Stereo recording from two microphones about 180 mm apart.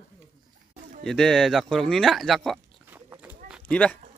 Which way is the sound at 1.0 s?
5° left (ahead or behind).